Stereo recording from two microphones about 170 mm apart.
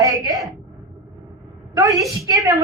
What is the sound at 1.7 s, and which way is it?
Speech, 20° right (ahead or behind).